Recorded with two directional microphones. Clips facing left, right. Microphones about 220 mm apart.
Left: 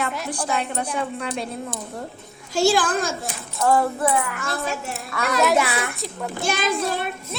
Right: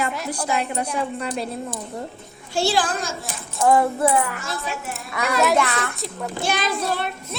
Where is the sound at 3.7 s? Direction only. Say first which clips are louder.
Right 2 dB; 20° right (ahead or behind).